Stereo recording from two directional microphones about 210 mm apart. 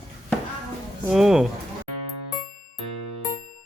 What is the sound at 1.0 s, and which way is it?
Speech, centre (ahead or behind).